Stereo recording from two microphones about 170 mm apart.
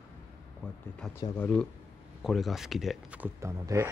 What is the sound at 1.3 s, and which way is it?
Speech, 10° left (ahead or behind).